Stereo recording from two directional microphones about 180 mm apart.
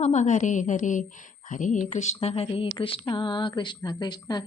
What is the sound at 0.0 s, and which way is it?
A woman's voice, 40° left (ahead or behind).